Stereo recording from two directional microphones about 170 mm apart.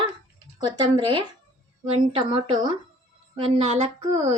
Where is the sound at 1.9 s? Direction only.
30° right (ahead or behind).